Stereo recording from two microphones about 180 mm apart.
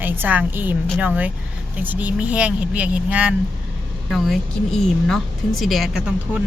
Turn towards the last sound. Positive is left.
turn(degrees=-5)  # may be behind; listen again after turning